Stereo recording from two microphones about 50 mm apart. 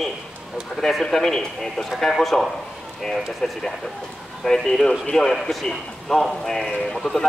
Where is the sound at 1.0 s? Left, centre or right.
Centre.